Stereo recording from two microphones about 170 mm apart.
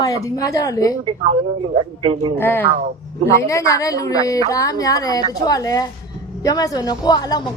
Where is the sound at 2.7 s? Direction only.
50° right (ahead or behind).